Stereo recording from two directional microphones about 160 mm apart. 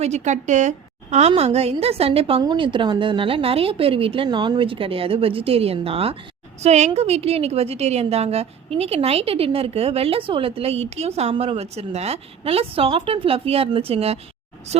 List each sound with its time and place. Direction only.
0.0 s a woman's voice: 45° right (ahead or behind)